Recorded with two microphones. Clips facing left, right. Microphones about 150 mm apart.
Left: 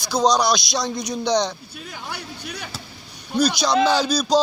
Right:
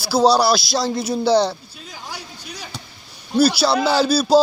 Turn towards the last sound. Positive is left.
turn(degrees=-10)  # may be behind; listen again after turning